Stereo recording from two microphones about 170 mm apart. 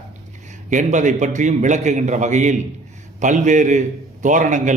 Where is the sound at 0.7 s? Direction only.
45° right (ahead or behind).